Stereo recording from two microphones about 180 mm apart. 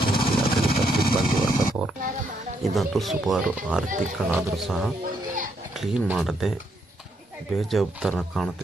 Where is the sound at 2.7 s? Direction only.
Centre (ahead or behind).